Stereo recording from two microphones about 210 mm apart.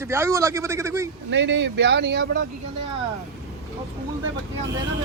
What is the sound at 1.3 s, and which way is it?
Speech, 60° right (ahead or behind).